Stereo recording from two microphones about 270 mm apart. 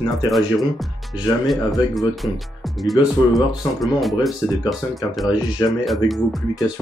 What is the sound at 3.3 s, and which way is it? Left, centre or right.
Speech, centre.